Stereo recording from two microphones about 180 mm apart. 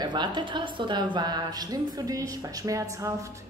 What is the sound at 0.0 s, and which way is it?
A woman's voice, 25° right (ahead or behind).